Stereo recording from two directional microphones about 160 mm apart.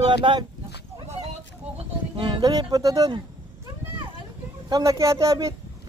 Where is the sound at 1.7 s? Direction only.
30° right (ahead or behind).